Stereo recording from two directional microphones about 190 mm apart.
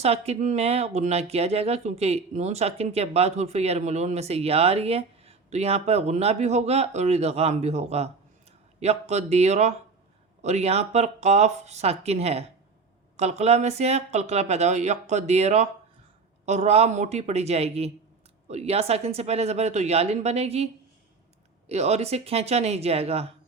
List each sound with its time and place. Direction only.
0.0 s speech: 35° right (ahead or behind)
21.7 s speech: 35° right (ahead or behind)